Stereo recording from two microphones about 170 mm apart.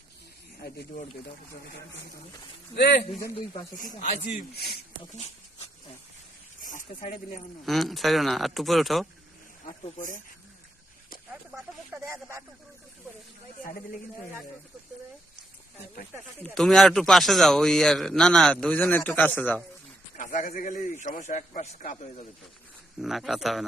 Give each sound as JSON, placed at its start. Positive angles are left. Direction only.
{"t": 1.6, "sound": "speech", "side_deg": 90}
{"t": 3.8, "sound": "a man's voice", "side_deg": 50}
{"t": 4.5, "sound": "speech", "side_deg": 70}
{"t": 5.1, "sound": "dog", "side_deg": 35}
{"t": 6.6, "sound": "snake", "side_deg": 50}
{"t": 7.6, "sound": "a man's voice", "side_deg": 0}
{"t": 9.8, "sound": "a man's voice", "side_deg": 50}
{"t": 12.0, "sound": "speech", "side_deg": -15}
{"t": 16.4, "sound": "a man's voice", "side_deg": 0}
{"t": 20.1, "sound": "a man's voice", "side_deg": 50}
{"t": 23.0, "sound": "a man's voice", "side_deg": 0}